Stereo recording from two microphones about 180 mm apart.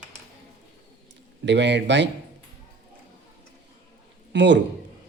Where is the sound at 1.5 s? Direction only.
75° right (ahead or behind).